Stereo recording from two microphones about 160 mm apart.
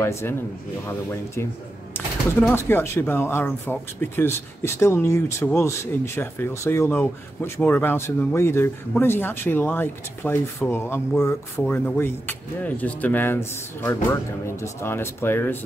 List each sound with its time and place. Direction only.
0.0 s speech: 15° left (ahead or behind)